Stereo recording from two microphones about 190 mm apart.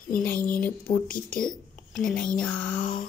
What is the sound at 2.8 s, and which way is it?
Speech, 45° left (ahead or behind).